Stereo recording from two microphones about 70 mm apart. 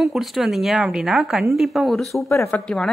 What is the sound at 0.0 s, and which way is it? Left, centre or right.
A woman's voice, centre.